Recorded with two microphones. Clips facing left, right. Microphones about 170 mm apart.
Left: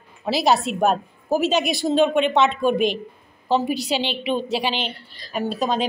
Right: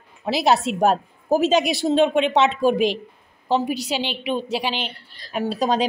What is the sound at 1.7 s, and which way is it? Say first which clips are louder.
Speech: even; 25° right (ahead or behind).